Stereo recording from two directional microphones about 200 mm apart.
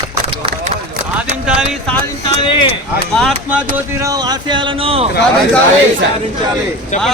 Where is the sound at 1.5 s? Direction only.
5° right (ahead or behind).